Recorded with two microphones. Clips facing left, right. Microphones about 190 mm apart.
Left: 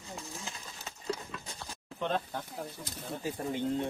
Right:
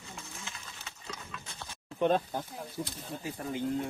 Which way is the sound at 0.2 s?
35° left (ahead or behind).